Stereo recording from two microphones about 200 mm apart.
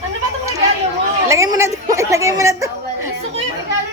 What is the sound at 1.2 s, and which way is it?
A woman's voice, 15° right (ahead or behind).